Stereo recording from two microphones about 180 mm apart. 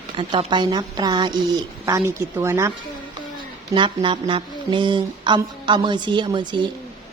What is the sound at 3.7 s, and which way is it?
A woman's voice, 30° right (ahead or behind).